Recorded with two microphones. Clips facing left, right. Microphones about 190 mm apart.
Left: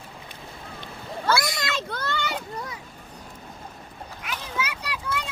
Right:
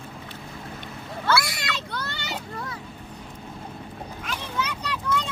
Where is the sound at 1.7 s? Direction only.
50° left (ahead or behind).